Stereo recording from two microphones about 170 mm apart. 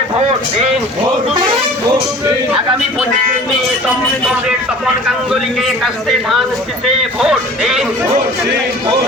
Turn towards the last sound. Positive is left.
turn(degrees=0)  # may be behind; listen again after turning